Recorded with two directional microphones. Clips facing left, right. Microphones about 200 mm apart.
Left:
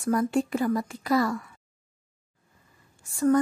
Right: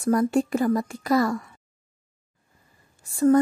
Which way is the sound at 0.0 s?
40° right (ahead or behind).